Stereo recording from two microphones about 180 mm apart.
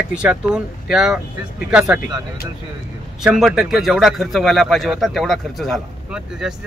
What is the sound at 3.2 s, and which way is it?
A man's voice, 5° right (ahead or behind).